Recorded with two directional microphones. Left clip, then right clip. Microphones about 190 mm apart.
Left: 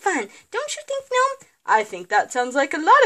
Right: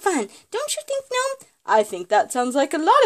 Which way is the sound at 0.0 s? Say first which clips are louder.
Even; 50° right (ahead or behind).